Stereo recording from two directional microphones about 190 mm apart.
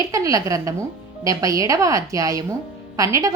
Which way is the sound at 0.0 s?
15° right (ahead or behind).